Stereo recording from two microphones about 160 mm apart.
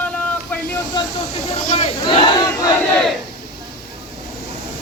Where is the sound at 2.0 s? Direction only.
30° left (ahead or behind).